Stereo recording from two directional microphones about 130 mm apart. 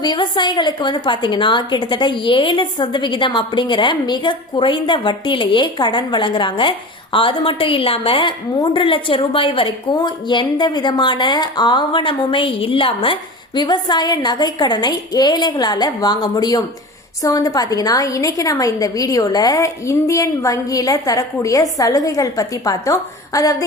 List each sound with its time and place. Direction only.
0.0 s a woman's voice: 35° left (ahead or behind)